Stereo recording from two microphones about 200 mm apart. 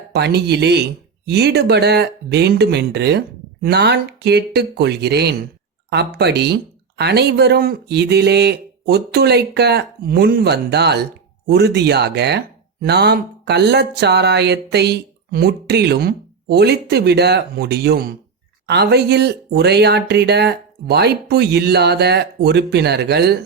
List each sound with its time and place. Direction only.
0.1 s speech: 55° right (ahead or behind)